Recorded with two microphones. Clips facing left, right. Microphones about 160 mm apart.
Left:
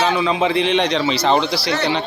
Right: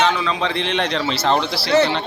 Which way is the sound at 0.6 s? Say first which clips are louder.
Left 4 dB; centre (ahead or behind).